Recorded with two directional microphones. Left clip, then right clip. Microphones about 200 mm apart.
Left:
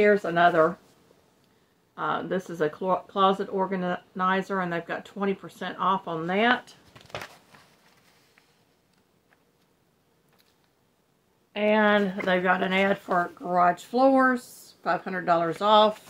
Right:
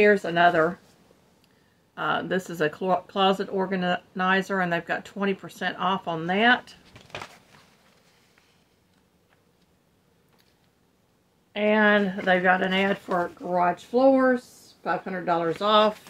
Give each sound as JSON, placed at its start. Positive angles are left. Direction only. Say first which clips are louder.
{"t": 0.0, "sound": "speech", "louder": "right 1 dB", "side_deg": -15}
{"t": 2.0, "sound": "speech", "louder": "right 2 dB", "side_deg": -20}
{"t": 11.5, "sound": "speech", "louder": "right 1 dB", "side_deg": -5}